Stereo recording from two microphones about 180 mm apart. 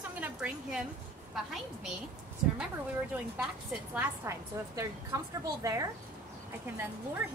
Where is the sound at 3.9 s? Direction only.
15° right (ahead or behind).